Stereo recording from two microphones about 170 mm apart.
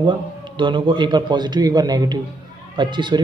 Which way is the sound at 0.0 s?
30° right (ahead or behind).